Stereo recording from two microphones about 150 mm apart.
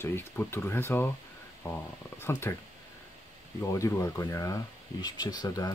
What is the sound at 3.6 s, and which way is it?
Speech, 20° left (ahead or behind).